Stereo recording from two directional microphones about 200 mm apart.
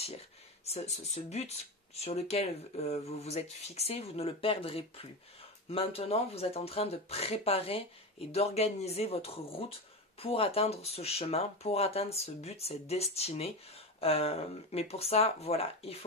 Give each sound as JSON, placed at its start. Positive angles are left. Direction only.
{"t": 0.7, "sound": "speech", "side_deg": 35}